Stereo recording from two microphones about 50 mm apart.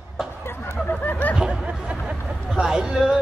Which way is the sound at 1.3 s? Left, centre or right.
Centre.